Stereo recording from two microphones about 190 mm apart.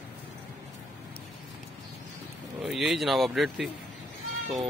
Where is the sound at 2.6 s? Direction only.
Centre (ahead or behind).